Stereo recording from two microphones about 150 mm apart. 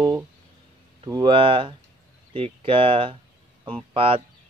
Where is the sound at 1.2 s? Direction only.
35° right (ahead or behind).